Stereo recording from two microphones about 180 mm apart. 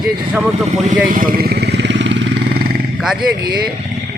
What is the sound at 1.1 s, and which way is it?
Vehicle, 55° right (ahead or behind).